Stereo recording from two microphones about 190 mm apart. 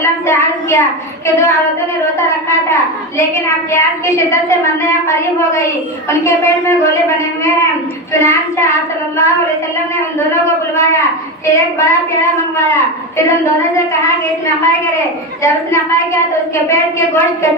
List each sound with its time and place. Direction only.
0.0 s a woman's voice: 15° left (ahead or behind)
2.7 s a woman's voice: 15° left (ahead or behind)
8.1 s a woman's voice: 15° left (ahead or behind)
10.3 s a woman's voice: 15° left (ahead or behind)
13.2 s a woman's voice: 15° left (ahead or behind)
15.4 s a woman's voice: 15° left (ahead or behind)